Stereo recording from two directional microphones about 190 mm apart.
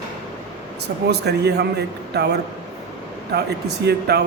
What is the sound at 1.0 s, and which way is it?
A man's voice, 60° right (ahead or behind).